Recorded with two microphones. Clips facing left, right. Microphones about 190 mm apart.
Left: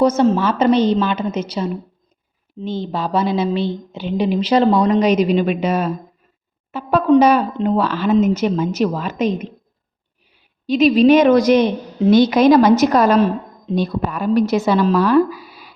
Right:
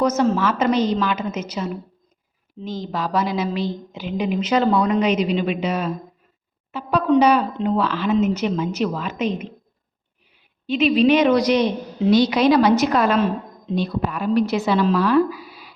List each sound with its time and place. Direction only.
0.0 s a woman's voice: 30° left (ahead or behind)
10.7 s speech: 40° left (ahead or behind)